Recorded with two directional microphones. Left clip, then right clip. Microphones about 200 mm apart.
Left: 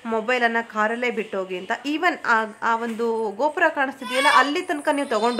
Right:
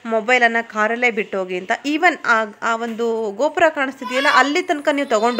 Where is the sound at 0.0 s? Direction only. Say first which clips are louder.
Right 6 dB; 15° right (ahead or behind).